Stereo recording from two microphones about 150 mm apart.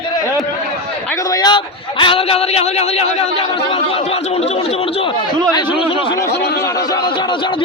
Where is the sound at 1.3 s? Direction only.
25° left (ahead or behind); by 3.2 s 45° left (ahead or behind).